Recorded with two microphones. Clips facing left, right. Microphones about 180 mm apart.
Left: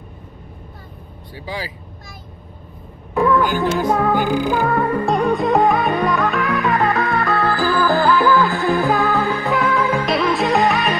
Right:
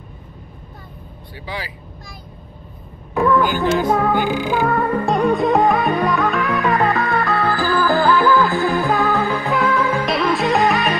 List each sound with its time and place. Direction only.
1.3 s speech: 40° left (ahead or behind)
3.2 s music: centre (ahead or behind)